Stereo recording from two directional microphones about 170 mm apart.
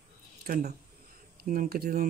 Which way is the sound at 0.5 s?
55° right (ahead or behind).